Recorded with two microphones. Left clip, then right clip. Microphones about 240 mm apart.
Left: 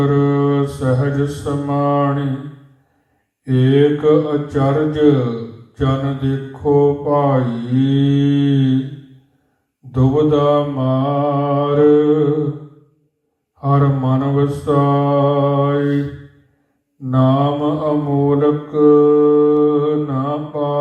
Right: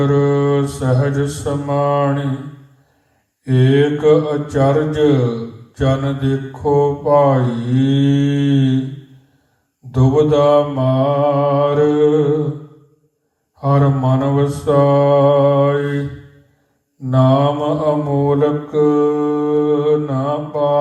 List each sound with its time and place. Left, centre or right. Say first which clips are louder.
0.0 s mantra: right 1 dB; right
3.4 s mantra: left 1 dB; right
9.9 s mantra: right 1 dB; right
13.6 s mantra: right 1 dB; right
17.1 s mantra: right 2 dB; right